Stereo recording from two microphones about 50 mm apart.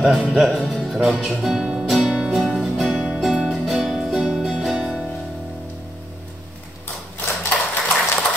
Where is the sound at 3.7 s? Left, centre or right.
Centre.